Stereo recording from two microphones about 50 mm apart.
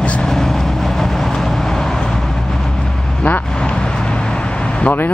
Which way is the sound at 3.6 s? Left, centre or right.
Centre.